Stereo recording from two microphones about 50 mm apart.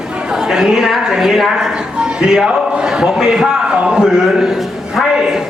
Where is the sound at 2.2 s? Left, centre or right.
Centre.